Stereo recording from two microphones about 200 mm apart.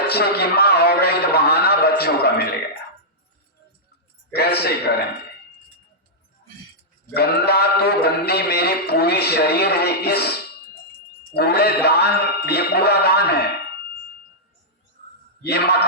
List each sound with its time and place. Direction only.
0.1 s a sound: 50° left (ahead or behind)
4.3 s a man's voice: 50° left (ahead or behind)
7.1 s a man's voice: 55° left (ahead or behind)
11.3 s a man's voice: 50° left (ahead or behind)
15.4 s a man's voice: 55° left (ahead or behind)